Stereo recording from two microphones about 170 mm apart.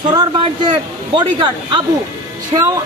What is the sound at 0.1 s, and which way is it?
A man's voice, 25° right (ahead or behind).